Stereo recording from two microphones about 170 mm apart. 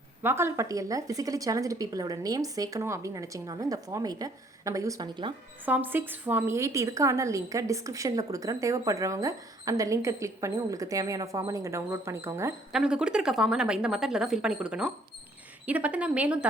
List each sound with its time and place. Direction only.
0.2 s speech: 15° right (ahead or behind)
5.6 s a woman's voice: 10° right (ahead or behind)
12.7 s a woman's voice: 5° right (ahead or behind)